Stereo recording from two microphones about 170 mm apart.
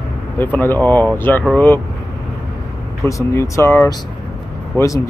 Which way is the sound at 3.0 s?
15° left (ahead or behind).